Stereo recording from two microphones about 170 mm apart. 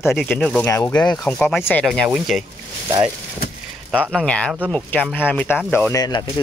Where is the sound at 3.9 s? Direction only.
5° left (ahead or behind); by 6.2 s 20° left (ahead or behind).